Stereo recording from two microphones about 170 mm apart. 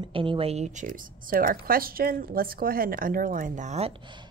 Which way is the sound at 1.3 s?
60° right (ahead or behind).